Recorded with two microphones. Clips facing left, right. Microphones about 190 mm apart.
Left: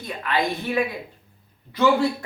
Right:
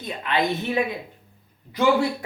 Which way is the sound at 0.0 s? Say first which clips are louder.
Even; 20° right (ahead or behind).